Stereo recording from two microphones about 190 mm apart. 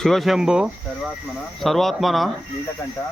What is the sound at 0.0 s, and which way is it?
Speech, centre (ahead or behind).